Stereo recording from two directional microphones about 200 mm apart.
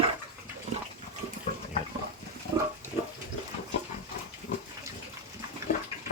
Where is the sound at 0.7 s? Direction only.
35° right (ahead or behind).